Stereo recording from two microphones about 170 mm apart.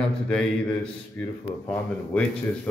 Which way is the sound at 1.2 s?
10° left (ahead or behind).